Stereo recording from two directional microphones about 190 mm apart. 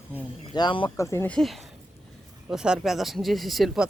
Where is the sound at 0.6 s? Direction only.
25° left (ahead or behind).